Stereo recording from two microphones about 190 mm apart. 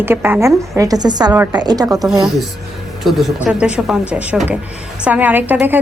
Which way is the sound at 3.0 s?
Centre (ahead or behind).